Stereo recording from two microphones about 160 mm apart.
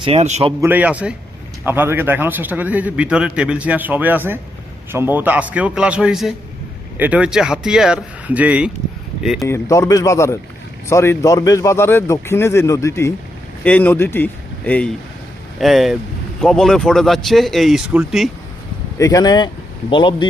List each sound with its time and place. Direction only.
0.0 s a man's voice: 40° right (ahead or behind)
0.6 s speech: 10° right (ahead or behind)
9.5 s speech: 20° left (ahead or behind); by 18.3 s 5° right (ahead or behind)
18.9 s speech: 20° left (ahead or behind)